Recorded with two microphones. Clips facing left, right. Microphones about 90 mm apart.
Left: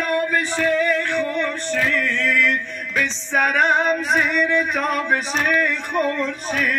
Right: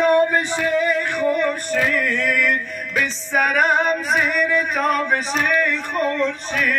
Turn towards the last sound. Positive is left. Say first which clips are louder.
# right 1 dB
turn(degrees=0)  # may be behind; listen again after turning